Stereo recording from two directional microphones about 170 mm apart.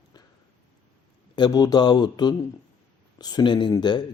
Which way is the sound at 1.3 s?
25° left (ahead or behind).